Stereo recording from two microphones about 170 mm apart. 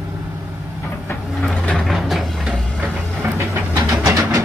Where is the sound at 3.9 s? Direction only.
15° right (ahead or behind).